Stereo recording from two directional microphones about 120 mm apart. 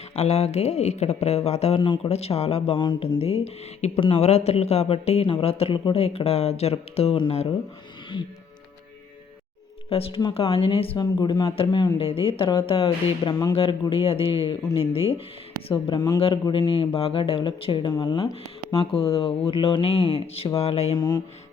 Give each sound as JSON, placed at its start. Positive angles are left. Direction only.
{"t": 0.2, "sound": "speech", "side_deg": 65}
{"t": 2.7, "sound": "speech", "side_deg": 40}
{"t": 3.2, "sound": "speech", "side_deg": 55}
{"t": 9.9, "sound": "speech", "side_deg": 55}
{"t": 10.9, "sound": "speech", "side_deg": 35}
{"t": 11.5, "sound": "speech", "side_deg": 45}
{"t": 11.9, "sound": "speech", "side_deg": 50}
{"t": 15.7, "sound": "speech", "side_deg": 40}
{"t": 16.2, "sound": "speech", "side_deg": 45}
{"t": 18.8, "sound": "speech", "side_deg": 50}